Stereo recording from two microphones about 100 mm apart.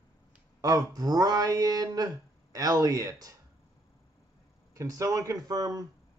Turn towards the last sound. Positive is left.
turn(degrees=-40)  # may be behind; listen again after turning